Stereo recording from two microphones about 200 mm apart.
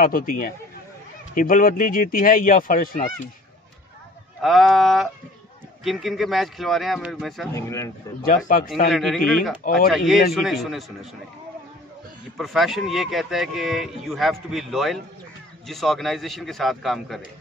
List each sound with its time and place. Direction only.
0.0 s speech: 45° left (ahead or behind)
4.4 s speech: centre (ahead or behind)
7.5 s a man's voice: 15° left (ahead or behind)
8.9 s speech: centre (ahead or behind)
12.4 s speech: centre (ahead or behind)